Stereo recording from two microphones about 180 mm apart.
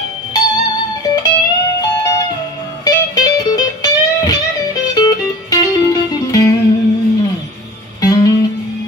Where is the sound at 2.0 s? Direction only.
20° left (ahead or behind).